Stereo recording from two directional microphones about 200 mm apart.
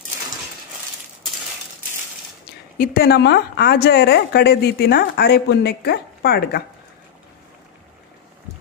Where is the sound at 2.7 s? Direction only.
45° left (ahead or behind).